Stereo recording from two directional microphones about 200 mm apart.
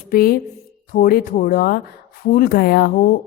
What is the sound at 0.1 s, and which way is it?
A woman's voice, 50° left (ahead or behind).